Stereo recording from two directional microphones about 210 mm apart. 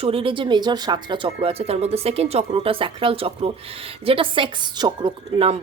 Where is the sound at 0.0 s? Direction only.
25° right (ahead or behind).